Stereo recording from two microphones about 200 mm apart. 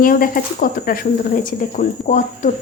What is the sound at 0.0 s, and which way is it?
Speech, 45° left (ahead or behind).